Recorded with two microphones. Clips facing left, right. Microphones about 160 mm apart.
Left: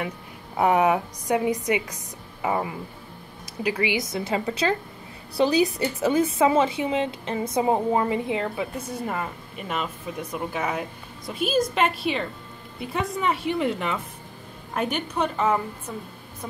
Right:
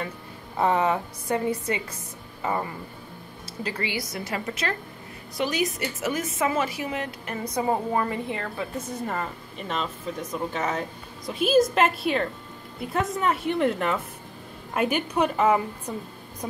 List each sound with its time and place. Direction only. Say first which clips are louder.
0.6 s a woman's voice: left 3 dB; 15° left (ahead or behind)
4.1 s a woman's voice: left 5 dB; 25° left (ahead or behind); by 15.6 s 10° right (ahead or behind)